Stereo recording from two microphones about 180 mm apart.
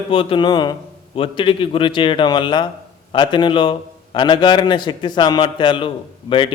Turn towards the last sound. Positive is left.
turn(degrees=30)  # may be behind; listen again after turning